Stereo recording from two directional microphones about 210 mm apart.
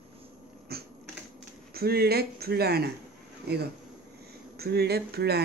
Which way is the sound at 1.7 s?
45° right (ahead or behind).